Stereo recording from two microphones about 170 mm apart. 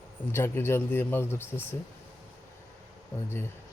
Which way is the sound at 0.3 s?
15° left (ahead or behind).